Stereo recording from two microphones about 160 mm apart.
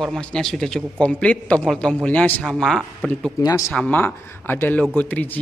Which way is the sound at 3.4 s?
20° left (ahead or behind).